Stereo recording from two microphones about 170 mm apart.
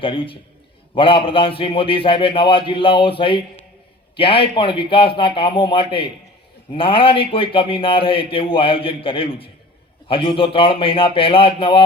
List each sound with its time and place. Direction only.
0.0 s a man's voice: 30° left (ahead or behind)